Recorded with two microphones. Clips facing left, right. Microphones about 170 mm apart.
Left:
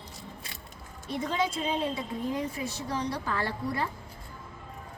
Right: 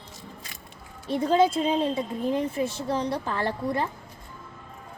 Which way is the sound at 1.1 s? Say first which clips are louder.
Right 9 dB; 35° right (ahead or behind).